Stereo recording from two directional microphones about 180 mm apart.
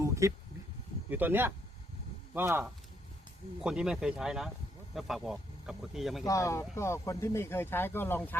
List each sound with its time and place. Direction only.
0.0 s a sound: 15° right (ahead or behind)
1.1 s speech: 10° right (ahead or behind)
6.2 s speech: 15° left (ahead or behind)